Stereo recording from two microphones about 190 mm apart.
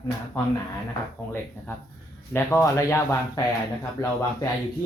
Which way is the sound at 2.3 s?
15° left (ahead or behind).